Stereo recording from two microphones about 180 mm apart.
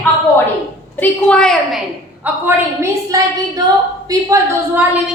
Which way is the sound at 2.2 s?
15° right (ahead or behind).